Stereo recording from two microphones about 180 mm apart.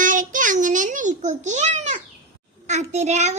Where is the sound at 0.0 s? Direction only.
45° right (ahead or behind).